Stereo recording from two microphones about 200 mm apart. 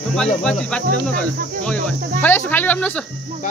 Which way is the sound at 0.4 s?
5° left (ahead or behind).